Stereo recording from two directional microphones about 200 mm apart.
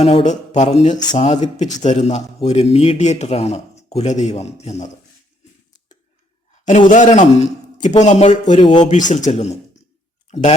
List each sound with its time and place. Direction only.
0.0 s speech: 30° left (ahead or behind)
6.5 s speech: 35° left (ahead or behind)